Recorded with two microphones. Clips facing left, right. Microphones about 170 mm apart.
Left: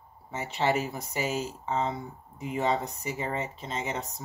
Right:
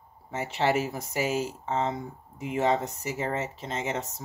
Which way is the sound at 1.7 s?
55° right (ahead or behind).